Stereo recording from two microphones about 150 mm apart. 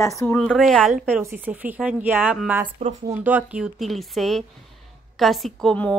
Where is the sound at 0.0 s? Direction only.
20° left (ahead or behind).